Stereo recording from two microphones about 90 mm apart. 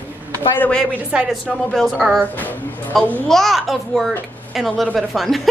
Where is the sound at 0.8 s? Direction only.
15° right (ahead or behind).